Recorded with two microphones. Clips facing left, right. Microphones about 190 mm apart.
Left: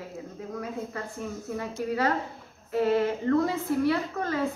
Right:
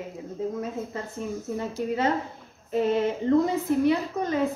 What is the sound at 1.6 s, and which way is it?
A woman's voice, 20° right (ahead or behind).